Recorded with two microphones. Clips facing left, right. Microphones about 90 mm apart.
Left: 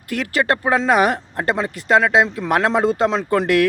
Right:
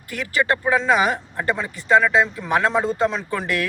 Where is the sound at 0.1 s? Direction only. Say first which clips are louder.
Left 2 dB; 60° left (ahead or behind).